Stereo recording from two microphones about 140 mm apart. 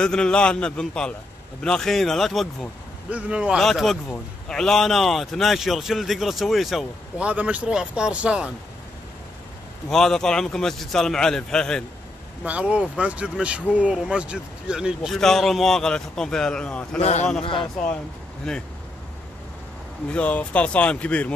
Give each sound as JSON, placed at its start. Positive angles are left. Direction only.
{"t": 0.0, "sound": "a man's voice", "side_deg": 5}
{"t": 9.8, "sound": "a man's voice", "side_deg": 5}
{"t": 12.4, "sound": "a man's voice", "side_deg": -10}
{"t": 17.0, "sound": "a man's voice", "side_deg": 50}
{"t": 17.4, "sound": "speech", "side_deg": 40}
{"t": 18.5, "sound": "a man's voice", "side_deg": 5}
{"t": 20.1, "sound": "speech", "side_deg": 10}